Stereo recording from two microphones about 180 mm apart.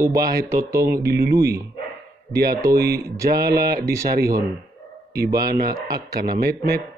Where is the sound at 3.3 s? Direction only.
60° right (ahead or behind).